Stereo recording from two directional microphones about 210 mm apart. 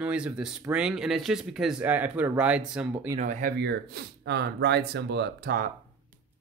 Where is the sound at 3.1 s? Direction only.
35° right (ahead or behind).